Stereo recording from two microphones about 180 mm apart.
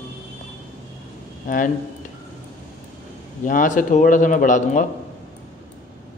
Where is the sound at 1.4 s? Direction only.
50° left (ahead or behind).